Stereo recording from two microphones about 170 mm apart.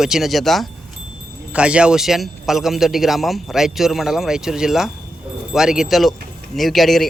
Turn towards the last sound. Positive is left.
turn(degrees=0)  # may be behind; listen again after turning